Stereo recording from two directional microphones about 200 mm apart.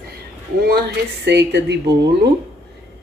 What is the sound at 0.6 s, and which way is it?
A woman's voice, 50° right (ahead or behind).